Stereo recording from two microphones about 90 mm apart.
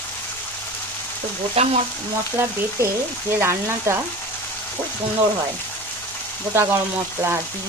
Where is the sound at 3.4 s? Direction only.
30° right (ahead or behind).